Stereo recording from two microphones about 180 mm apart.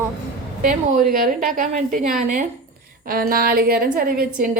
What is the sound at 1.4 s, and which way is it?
A woman's voice, 50° right (ahead or behind).